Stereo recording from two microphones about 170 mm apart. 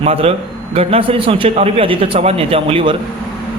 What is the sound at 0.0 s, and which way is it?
A man's voice, 35° right (ahead or behind).